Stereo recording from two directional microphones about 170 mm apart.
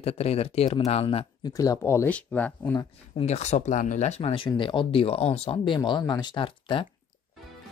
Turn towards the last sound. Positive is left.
turn(degrees=30)  # may be behind; listen again after turning